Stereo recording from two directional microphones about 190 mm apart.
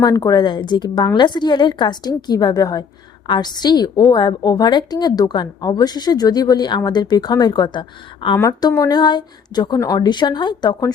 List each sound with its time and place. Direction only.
0.0 s a woman's voice: 20° left (ahead or behind)
8.4 s a woman's voice: 15° left (ahead or behind)